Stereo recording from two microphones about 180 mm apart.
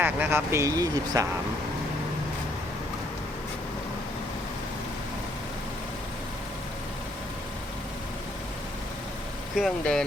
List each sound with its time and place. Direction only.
0.0 s speech: 10° right (ahead or behind)
9.6 s speech: centre (ahead or behind)